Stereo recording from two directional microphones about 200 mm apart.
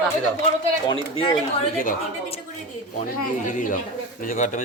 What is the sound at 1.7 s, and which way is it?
Speech, 45° left (ahead or behind).